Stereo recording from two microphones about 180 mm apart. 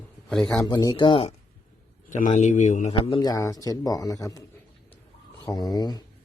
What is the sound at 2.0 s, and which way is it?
Speech, 45° left (ahead or behind).